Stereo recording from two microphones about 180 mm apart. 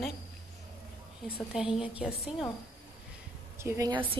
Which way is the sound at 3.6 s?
15° right (ahead or behind).